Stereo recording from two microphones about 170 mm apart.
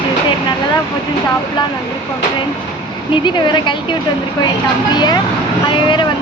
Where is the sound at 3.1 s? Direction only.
25° left (ahead or behind).